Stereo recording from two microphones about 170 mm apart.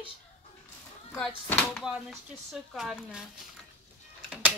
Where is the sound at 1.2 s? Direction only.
10° left (ahead or behind).